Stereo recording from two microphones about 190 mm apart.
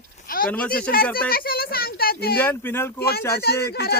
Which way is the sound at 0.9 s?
50° left (ahead or behind).